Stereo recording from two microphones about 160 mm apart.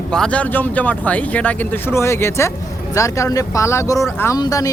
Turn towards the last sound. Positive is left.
turn(degrees=20)  # may be behind; listen again after turning